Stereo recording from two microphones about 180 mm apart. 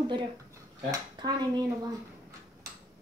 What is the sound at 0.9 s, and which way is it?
Speech, 20° right (ahead or behind).